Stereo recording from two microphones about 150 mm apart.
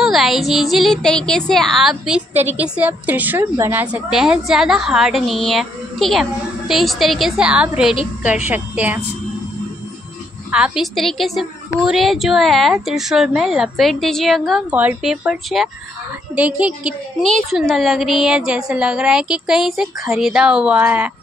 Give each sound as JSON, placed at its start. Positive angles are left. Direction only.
{"t": 0.0, "sound": "a woman's voice", "side_deg": 0}
{"t": 10.5, "sound": "a woman's voice", "side_deg": -5}
{"t": 14.7, "sound": "a woman's voice", "side_deg": -10}